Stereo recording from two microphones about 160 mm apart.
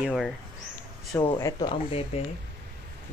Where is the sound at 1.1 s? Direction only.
25° left (ahead or behind).